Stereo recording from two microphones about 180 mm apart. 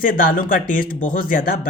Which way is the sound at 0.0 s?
50° left (ahead or behind).